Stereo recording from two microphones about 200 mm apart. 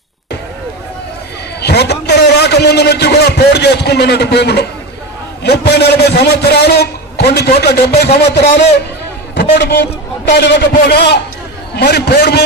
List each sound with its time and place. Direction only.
1.6 s a man's voice: 55° left (ahead or behind)